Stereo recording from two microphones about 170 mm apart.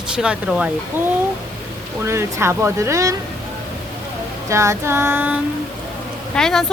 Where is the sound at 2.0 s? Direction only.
15° right (ahead or behind).